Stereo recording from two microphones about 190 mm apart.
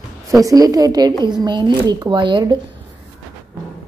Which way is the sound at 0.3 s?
20° right (ahead or behind).